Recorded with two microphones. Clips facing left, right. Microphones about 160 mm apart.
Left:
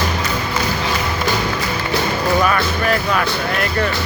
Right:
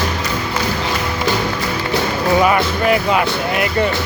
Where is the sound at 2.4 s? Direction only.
20° right (ahead or behind).